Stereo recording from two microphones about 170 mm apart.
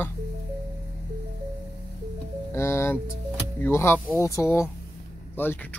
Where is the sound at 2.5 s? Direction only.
15° left (ahead or behind).